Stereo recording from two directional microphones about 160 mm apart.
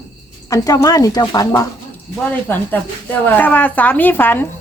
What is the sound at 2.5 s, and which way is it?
A woman's voice, 10° left (ahead or behind).